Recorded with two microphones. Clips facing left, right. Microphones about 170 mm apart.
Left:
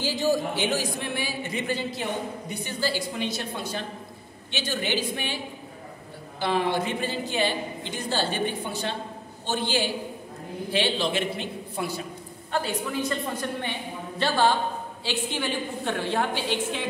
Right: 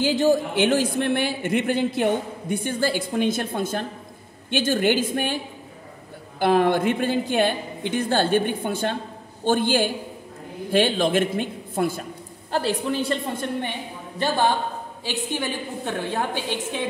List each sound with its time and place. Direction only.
0.0 s a man's voice: 55° right (ahead or behind)
6.4 s a woman's voice: 50° right (ahead or behind)
12.4 s a woman's voice: 35° right (ahead or behind); by 16.4 s 15° right (ahead or behind)